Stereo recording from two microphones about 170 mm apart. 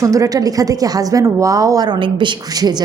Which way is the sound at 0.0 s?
20° right (ahead or behind).